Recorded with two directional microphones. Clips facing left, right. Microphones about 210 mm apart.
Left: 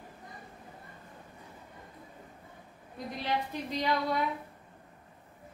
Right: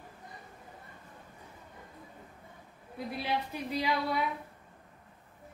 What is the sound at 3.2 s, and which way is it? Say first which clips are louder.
Speech: left 1 dB; 10° right (ahead or behind).